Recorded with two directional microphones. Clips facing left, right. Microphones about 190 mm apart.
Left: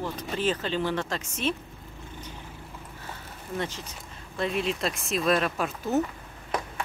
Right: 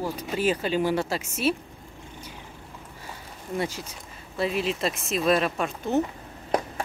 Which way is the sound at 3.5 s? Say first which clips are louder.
Right 3 dB; 10° right (ahead or behind).